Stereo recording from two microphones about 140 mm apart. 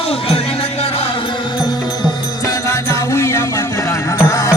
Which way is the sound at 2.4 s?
20° left (ahead or behind).